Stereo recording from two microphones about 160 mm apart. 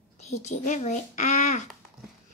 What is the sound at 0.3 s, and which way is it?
A child's voice, 45° left (ahead or behind).